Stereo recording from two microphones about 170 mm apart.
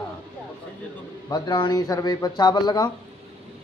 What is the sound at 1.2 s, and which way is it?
A man's voice, 25° left (ahead or behind).